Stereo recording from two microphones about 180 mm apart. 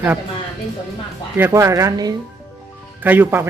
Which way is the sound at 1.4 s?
15° right (ahead or behind).